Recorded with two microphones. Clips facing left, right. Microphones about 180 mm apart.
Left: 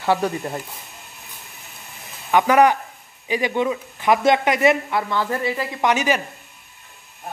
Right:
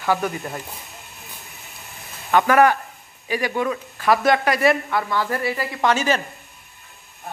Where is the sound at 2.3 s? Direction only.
15° left (ahead or behind).